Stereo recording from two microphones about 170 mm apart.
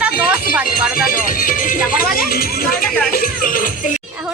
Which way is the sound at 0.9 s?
55° left (ahead or behind).